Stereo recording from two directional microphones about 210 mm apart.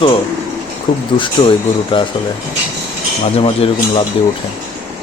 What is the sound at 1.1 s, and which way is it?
Speech, 25° left (ahead or behind).